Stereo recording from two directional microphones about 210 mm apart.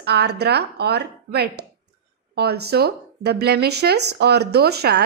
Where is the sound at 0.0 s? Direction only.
50° right (ahead or behind).